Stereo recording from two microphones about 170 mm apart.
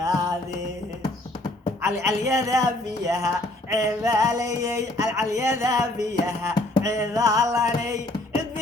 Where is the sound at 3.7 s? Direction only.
20° right (ahead or behind).